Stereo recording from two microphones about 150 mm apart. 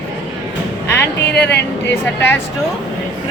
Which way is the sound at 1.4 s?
15° left (ahead or behind).